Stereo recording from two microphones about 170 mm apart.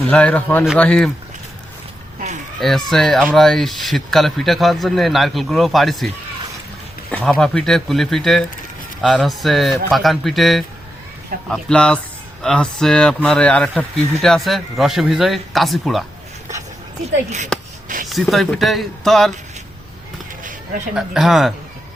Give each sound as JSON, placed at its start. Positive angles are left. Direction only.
{"t": 0.1, "sound": "a man's voice", "side_deg": 10}
{"t": 2.6, "sound": "speech", "side_deg": 0}
{"t": 7.1, "sound": "speech", "side_deg": 5}
{"t": 17.2, "sound": "speech", "side_deg": -45}
{"t": 18.1, "sound": "speech", "side_deg": 0}
{"t": 20.9, "sound": "speech", "side_deg": 0}